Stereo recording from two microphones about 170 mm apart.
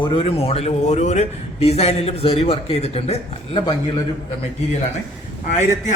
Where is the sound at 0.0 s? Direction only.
30° left (ahead or behind).